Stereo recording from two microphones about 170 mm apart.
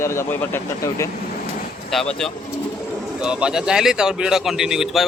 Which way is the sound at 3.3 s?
5° right (ahead or behind).